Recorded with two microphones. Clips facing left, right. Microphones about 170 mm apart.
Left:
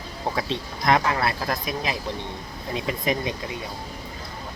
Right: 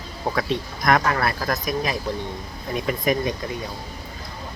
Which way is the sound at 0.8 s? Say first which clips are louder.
Right 1 dB; 25° left (ahead or behind).